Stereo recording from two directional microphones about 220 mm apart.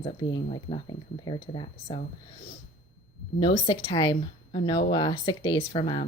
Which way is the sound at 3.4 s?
25° left (ahead or behind).